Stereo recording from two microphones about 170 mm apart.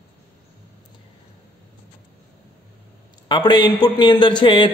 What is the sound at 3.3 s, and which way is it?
A man's voice, 25° left (ahead or behind).